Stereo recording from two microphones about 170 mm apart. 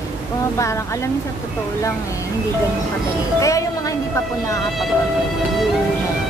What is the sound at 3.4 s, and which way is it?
Speech, 20° left (ahead or behind).